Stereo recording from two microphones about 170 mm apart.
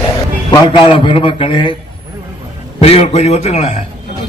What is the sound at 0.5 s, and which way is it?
A man's voice, 30° left (ahead or behind).